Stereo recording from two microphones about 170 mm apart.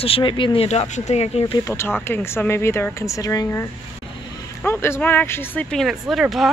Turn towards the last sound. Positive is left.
turn(degrees=0)  # may be behind; listen again after turning